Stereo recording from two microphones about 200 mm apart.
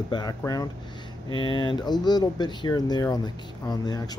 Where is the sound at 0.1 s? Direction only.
20° left (ahead or behind).